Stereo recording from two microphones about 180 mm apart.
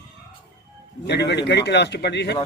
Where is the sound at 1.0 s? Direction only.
70° left (ahead or behind).